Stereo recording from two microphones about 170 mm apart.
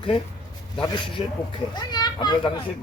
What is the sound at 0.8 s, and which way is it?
A child's voice, 30° left (ahead or behind).